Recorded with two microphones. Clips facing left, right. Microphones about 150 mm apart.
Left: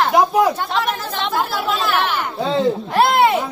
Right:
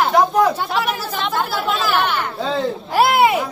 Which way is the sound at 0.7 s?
5° right (ahead or behind).